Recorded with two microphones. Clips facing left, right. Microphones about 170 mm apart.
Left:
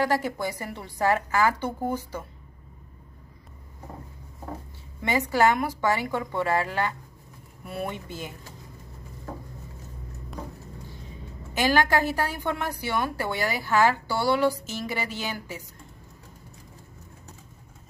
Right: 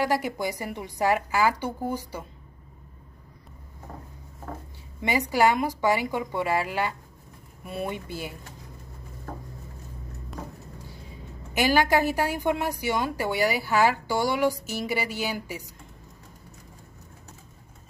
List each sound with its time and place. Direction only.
0.0 s a woman's voice: 15° right (ahead or behind)
5.0 s a woman's voice: 10° right (ahead or behind)
11.5 s a woman's voice: 15° right (ahead or behind)